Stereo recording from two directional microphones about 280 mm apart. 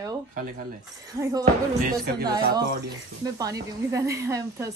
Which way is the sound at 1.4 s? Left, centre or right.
Right.